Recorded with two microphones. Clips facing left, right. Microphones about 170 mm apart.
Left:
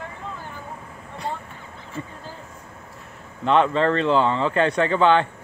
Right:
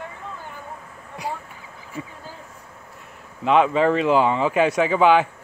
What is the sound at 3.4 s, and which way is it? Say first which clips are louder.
Speech: right 1 dB; 5° right (ahead or behind).